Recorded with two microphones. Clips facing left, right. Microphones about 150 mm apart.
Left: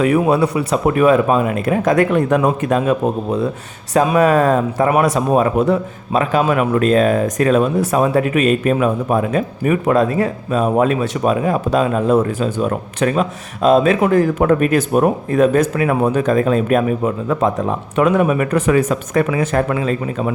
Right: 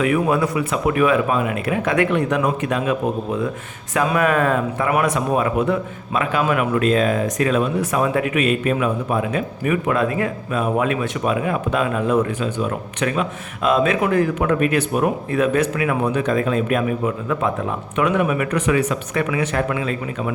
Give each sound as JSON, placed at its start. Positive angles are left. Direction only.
{"t": 0.0, "sound": "speech", "side_deg": 30}
{"t": 3.9, "sound": "speech", "side_deg": 35}